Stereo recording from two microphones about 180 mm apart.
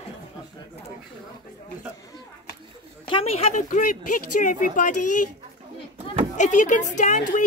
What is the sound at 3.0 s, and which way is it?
A woman's voice, 30° left (ahead or behind).